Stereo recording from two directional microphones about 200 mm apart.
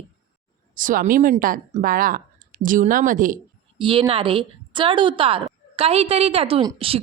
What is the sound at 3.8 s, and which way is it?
A woman's voice, 25° right (ahead or behind).